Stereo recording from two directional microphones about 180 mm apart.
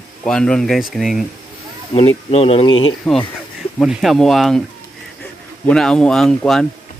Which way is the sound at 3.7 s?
Centre (ahead or behind).